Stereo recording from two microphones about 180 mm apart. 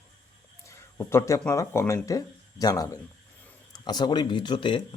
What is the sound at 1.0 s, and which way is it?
Speech, 15° left (ahead or behind).